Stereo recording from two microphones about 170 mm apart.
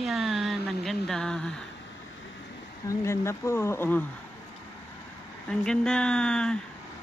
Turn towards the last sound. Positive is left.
turn(degrees=5)  # may be behind; listen again after turning